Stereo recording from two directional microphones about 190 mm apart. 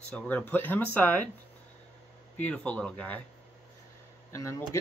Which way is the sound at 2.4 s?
10° left (ahead or behind).